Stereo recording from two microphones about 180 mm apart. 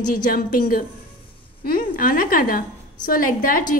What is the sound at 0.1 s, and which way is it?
A woman's voice, 55° left (ahead or behind).